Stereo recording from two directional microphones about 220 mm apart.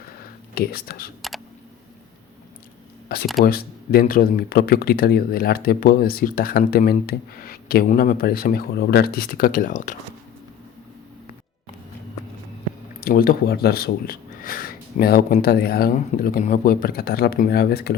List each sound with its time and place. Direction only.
0.5 s speech: 45° left (ahead or behind)
3.1 s speech: 45° left (ahead or behind)
13.0 s speech: 45° left (ahead or behind)